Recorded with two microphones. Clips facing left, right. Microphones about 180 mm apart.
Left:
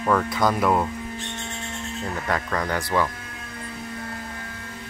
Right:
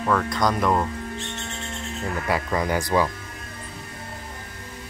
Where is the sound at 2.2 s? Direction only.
10° right (ahead or behind).